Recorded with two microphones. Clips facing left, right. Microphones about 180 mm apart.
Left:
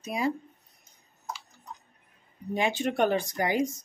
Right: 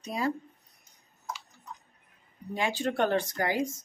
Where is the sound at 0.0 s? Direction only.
10° left (ahead or behind).